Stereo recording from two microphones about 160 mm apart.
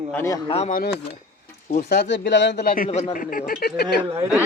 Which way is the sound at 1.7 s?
90° left.